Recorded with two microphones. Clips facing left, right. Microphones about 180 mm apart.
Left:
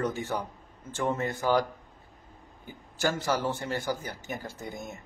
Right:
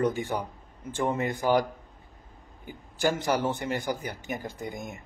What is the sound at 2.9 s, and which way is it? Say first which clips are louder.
A man's voice: right 2 dB; 15° right (ahead or behind).